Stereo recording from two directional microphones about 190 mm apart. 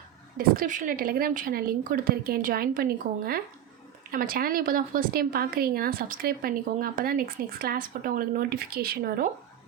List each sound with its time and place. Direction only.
0.3 s speech: 45° right (ahead or behind)